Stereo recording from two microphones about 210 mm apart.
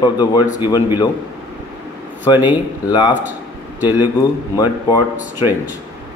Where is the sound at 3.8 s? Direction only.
10° right (ahead or behind).